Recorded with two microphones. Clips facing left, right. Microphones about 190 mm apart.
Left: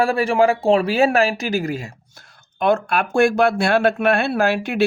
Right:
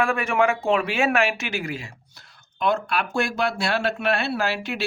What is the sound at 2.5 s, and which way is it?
Speech, 55° left (ahead or behind).